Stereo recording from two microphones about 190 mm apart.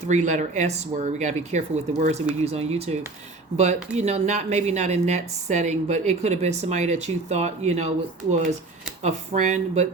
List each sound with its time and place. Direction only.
0.1 s speech: 40° right (ahead or behind)
9.0 s speech: 40° right (ahead or behind)